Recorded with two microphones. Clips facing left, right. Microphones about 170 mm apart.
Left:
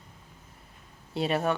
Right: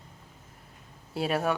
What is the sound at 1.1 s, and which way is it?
Speech, 5° right (ahead or behind).